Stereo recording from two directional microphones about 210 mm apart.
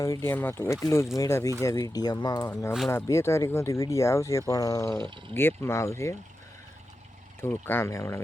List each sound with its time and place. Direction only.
0.0 s speech: 15° left (ahead or behind)
4.9 s speech: 20° right (ahead or behind)
5.3 s speech: 10° left (ahead or behind)
7.4 s speech: 10° left (ahead or behind)